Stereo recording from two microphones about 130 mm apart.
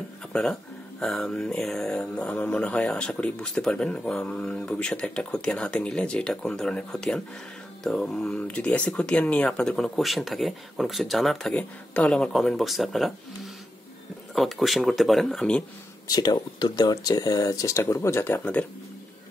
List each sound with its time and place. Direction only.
0.3 s speech: 5° left (ahead or behind)
14.3 s speech: centre (ahead or behind)
16.1 s speech: 30° left (ahead or behind); by 18.7 s 10° left (ahead or behind)